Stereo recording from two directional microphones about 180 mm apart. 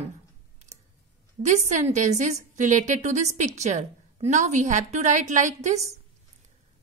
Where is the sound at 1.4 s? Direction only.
40° right (ahead or behind).